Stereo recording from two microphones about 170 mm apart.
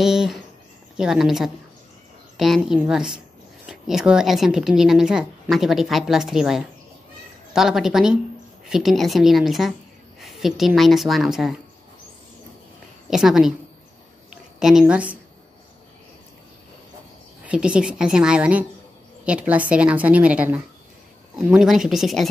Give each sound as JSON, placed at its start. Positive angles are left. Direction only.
{"t": 0.0, "sound": "a woman's voice", "side_deg": 0}
{"t": 13.1, "sound": "a woman's voice", "side_deg": -5}
{"t": 14.6, "sound": "a woman's voice", "side_deg": 0}
{"t": 17.5, "sound": "a woman's voice", "side_deg": -5}